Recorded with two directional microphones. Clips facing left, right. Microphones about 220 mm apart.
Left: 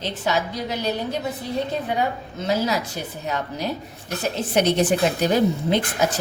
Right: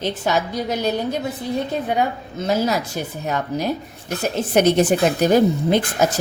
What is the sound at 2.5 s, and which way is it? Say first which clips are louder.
Speech: right 2 dB; 50° right (ahead or behind).